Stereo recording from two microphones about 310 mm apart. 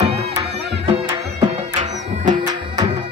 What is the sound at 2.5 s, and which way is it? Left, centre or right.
Music, centre.